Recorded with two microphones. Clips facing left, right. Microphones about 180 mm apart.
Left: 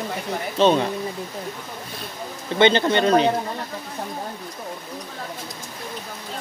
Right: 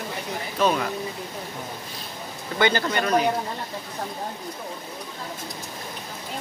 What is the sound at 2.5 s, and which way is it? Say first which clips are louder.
Speech: left 5 dB; 25° left (ahead or behind).